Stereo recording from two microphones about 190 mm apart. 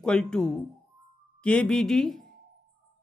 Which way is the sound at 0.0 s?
5° left (ahead or behind).